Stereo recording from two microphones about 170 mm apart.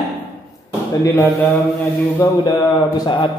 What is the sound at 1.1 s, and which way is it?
A man's voice, 15° left (ahead or behind).